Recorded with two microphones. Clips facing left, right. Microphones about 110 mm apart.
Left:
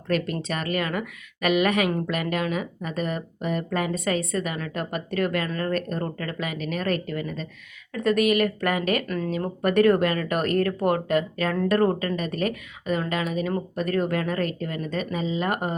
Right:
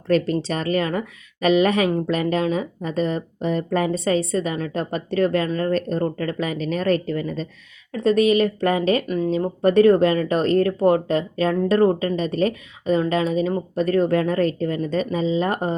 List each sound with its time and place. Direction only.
0.3 s speech: 30° right (ahead or behind)
9.0 s speech: 15° right (ahead or behind)
9.6 s speech: 25° right (ahead or behind)